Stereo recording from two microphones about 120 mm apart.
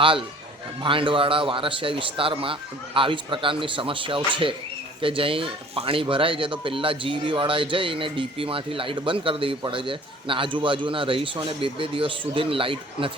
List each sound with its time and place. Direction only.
0.0 s speech: 45° right (ahead or behind)